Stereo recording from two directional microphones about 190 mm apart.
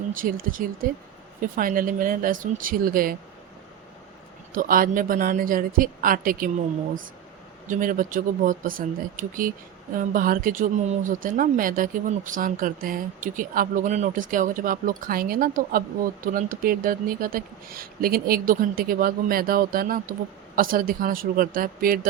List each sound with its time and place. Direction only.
0.1 s speech: 45° right (ahead or behind)
4.5 s speech: 45° right (ahead or behind)
7.7 s speech: 45° right (ahead or behind)